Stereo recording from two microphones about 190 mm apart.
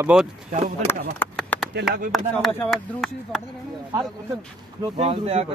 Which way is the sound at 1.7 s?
55° right (ahead or behind).